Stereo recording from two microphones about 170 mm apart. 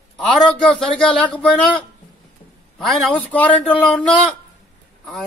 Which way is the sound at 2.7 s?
Centre (ahead or behind).